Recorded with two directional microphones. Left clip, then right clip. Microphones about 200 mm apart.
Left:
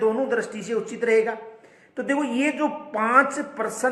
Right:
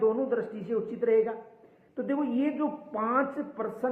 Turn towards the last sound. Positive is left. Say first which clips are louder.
# left 6 dB
turn(degrees=15)  # may be behind; listen again after turning